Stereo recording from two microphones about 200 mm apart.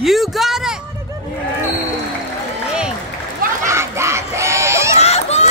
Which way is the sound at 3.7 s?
15° right (ahead or behind).